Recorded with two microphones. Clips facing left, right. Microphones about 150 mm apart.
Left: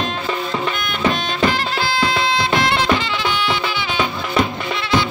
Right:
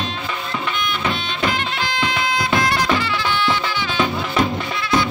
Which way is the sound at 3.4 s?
15° left (ahead or behind).